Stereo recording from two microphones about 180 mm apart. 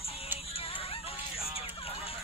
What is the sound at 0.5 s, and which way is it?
Music, 30° left (ahead or behind).